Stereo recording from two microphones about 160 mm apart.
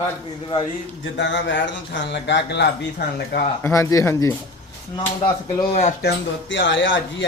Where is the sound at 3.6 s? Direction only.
20° left (ahead or behind).